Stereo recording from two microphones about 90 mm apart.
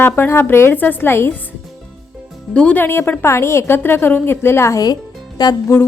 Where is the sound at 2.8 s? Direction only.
25° left (ahead or behind).